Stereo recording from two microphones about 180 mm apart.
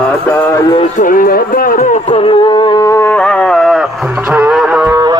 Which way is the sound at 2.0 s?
30° left (ahead or behind).